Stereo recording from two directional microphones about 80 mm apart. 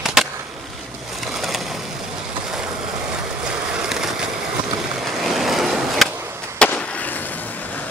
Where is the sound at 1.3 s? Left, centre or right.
Centre.